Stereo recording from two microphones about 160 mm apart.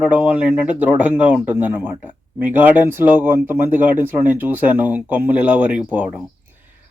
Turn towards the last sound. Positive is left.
turn(degrees=-10)  # may be behind; listen again after turning